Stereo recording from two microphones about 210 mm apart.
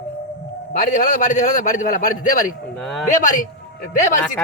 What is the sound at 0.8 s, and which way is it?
A man's voice, 35° left (ahead or behind).